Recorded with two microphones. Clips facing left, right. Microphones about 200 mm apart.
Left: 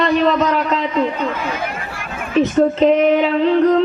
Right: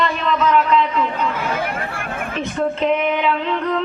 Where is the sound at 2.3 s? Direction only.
35° left (ahead or behind).